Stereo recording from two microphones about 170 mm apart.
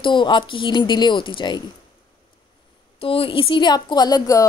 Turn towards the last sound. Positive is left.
turn(degrees=20)  # may be behind; listen again after turning